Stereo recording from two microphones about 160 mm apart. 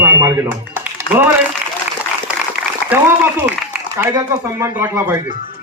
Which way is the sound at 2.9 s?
10° right (ahead or behind).